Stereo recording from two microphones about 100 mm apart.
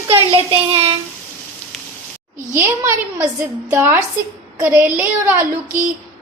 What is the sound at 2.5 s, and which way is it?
Speech, 25° right (ahead or behind).